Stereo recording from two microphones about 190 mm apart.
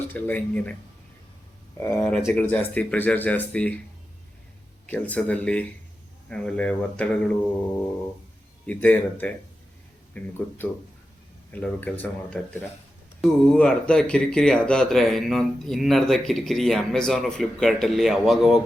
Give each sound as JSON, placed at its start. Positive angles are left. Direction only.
{"t": 0.1, "sound": "speech", "side_deg": 10}
{"t": 1.8, "sound": "speech", "side_deg": 20}
{"t": 2.0, "sound": "speech", "side_deg": 5}
{"t": 4.9, "sound": "speech", "side_deg": 10}
{"t": 8.6, "sound": "speech", "side_deg": 10}
{"t": 11.6, "sound": "speech", "side_deg": 5}